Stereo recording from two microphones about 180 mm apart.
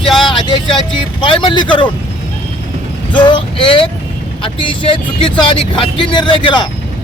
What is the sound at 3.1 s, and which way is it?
A man's voice, 25° left (ahead or behind).